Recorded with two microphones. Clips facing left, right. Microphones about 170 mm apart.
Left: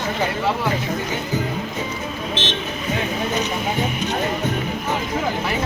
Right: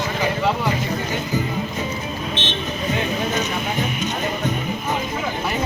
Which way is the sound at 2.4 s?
90° left.